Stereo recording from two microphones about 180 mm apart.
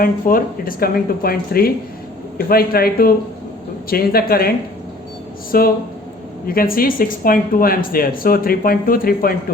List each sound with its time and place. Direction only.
0.0 s a woman's voice: 50° left (ahead or behind)